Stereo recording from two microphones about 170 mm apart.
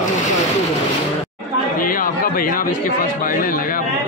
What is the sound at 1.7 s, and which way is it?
A man's voice, 55° left (ahead or behind).